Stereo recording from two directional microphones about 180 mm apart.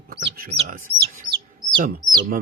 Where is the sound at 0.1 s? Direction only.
55° right (ahead or behind).